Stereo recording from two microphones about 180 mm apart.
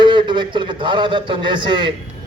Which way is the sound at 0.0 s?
25° right (ahead or behind).